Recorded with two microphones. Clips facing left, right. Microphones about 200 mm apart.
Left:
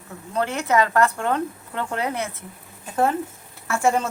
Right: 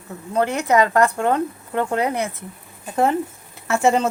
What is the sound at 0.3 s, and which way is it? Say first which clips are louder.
Speech: right 3 dB; 15° right (ahead or behind).